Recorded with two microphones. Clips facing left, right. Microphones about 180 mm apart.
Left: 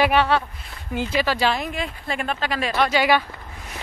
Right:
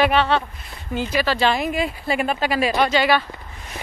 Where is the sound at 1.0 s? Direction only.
20° left (ahead or behind).